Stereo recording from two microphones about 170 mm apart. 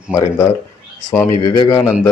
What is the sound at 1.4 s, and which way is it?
Speech, 25° left (ahead or behind).